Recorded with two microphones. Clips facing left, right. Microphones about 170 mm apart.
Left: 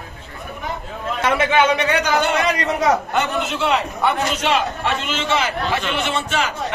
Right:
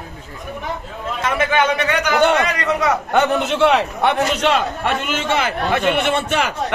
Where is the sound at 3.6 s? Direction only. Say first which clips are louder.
Right 4 dB; 65° right (ahead or behind).